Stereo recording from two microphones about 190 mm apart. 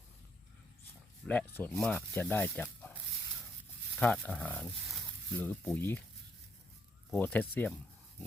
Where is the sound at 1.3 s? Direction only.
10° left (ahead or behind).